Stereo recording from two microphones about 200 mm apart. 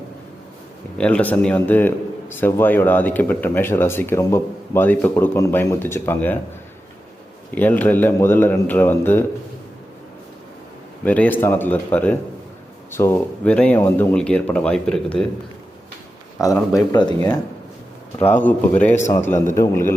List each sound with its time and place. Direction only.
0.9 s speech: 5° left (ahead or behind)
7.5 s speech: 10° left (ahead or behind)
11.0 s speech: 10° left (ahead or behind)
16.6 s speech: 15° left (ahead or behind)
18.3 s speech: 10° left (ahead or behind)